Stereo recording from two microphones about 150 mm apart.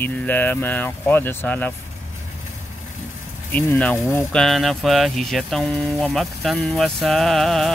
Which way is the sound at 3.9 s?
20° left (ahead or behind).